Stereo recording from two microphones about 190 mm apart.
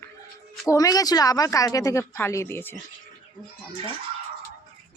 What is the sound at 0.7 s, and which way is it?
Speech, 20° left (ahead or behind).